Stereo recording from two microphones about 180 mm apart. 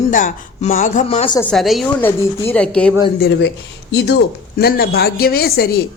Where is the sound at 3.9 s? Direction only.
70° left (ahead or behind).